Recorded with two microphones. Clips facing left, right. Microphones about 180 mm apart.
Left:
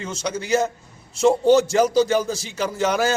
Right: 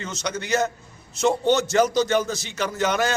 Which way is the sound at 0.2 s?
10° left (ahead or behind).